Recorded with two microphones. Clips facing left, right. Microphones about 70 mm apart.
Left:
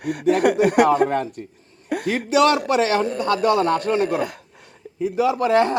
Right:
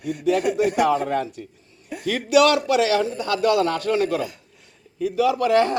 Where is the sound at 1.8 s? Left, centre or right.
Left.